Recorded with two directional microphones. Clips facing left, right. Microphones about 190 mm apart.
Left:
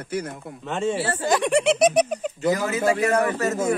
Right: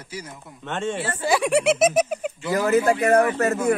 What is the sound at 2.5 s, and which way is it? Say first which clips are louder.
Speech: right 3 dB; 55° right (ahead or behind).